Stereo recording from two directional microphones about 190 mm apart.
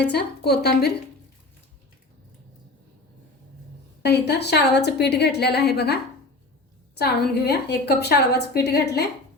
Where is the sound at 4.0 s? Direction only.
60° left (ahead or behind).